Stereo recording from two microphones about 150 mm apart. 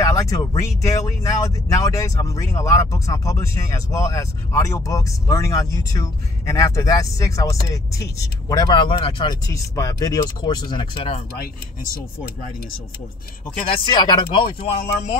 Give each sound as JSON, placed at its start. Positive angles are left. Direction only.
{"t": 0.0, "sound": "speech", "side_deg": 20}
{"t": 9.5, "sound": "speech", "side_deg": 20}
{"t": 13.7, "sound": "speech", "side_deg": 30}